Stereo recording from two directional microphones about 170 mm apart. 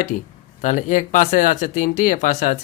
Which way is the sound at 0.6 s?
45° left (ahead or behind).